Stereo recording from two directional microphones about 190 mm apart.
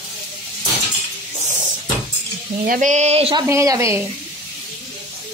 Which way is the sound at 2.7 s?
40° right (ahead or behind).